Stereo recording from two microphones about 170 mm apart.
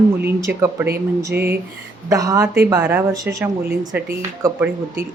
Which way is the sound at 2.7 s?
10° right (ahead or behind).